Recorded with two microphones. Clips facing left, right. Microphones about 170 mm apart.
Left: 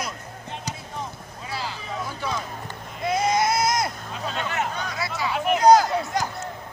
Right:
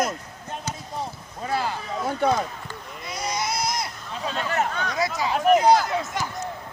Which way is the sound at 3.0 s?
50° left (ahead or behind).